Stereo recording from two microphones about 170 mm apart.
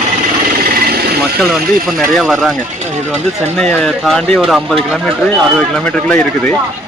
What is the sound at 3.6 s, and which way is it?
Speech, 5° left (ahead or behind).